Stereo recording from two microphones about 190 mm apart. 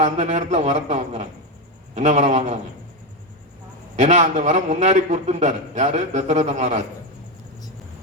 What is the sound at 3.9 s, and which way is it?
A man's voice, 35° right (ahead or behind).